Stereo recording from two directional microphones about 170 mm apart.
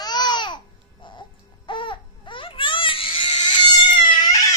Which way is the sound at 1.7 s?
30° left (ahead or behind).